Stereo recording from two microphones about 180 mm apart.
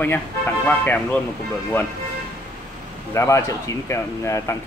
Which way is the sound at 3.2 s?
15° left (ahead or behind).